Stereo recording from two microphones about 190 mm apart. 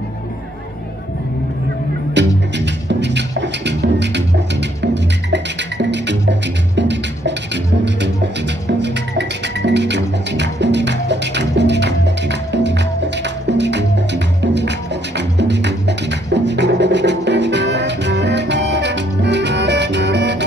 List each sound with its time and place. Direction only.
2.1 s music: 65° right (ahead or behind)